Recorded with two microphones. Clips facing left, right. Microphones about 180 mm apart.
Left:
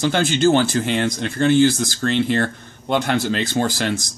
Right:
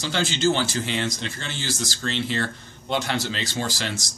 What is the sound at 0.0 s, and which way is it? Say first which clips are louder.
Speech: left 6 dB; 55° left (ahead or behind).